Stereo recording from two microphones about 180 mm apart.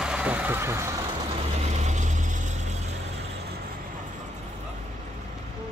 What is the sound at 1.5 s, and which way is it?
Vehicle, 40° right (ahead or behind).